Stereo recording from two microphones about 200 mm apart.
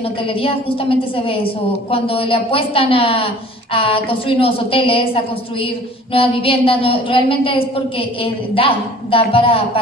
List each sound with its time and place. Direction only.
0.0 s a woman's voice: 25° left (ahead or behind)